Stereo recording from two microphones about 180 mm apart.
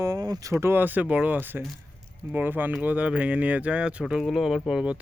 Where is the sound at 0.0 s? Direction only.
20° right (ahead or behind).